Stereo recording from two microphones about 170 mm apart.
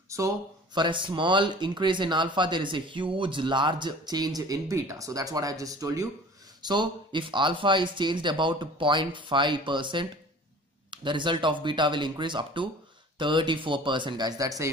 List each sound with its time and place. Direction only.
0.7 s speech: 30° right (ahead or behind)